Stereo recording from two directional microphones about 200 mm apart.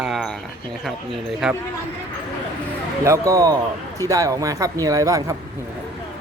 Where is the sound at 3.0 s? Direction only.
15° right (ahead or behind).